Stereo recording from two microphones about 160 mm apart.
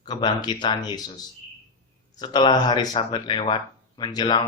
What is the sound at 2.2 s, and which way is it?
Speech, 25° left (ahead or behind).